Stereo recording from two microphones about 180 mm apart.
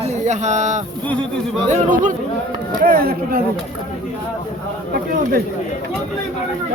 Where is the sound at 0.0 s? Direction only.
40° right (ahead or behind).